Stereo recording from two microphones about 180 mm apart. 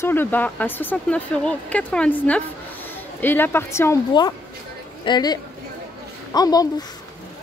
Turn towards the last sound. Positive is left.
turn(degrees=20)  # may be behind; listen again after turning